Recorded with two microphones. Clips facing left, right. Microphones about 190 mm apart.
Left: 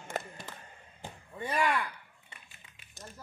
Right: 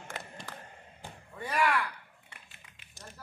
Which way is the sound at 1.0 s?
20° left (ahead or behind).